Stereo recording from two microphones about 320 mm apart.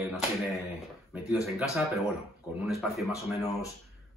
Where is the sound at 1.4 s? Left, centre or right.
Centre.